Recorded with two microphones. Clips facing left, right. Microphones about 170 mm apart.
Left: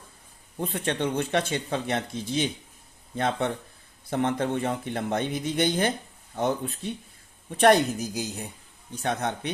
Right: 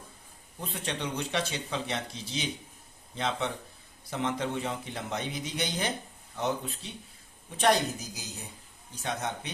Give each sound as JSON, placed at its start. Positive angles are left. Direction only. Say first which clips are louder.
{"t": 0.6, "sound": "a woman's voice", "louder": "left 7 dB", "side_deg": 55}